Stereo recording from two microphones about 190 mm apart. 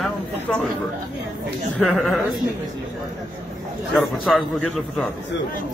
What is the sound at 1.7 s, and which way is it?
Speech, centre (ahead or behind).